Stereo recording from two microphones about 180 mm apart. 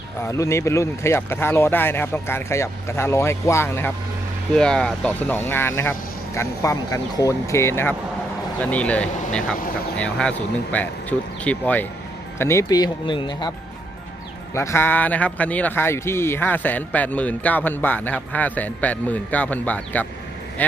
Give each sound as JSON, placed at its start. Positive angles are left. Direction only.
{"t": 0.3, "sound": "a man's voice", "side_deg": 15}
{"t": 14.5, "sound": "a man's voice", "side_deg": 15}